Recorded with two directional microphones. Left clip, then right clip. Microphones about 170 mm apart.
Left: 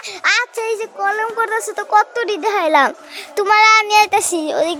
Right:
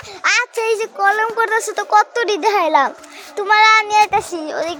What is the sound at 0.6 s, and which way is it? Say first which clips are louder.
Speech: right 3 dB; 30° right (ahead or behind).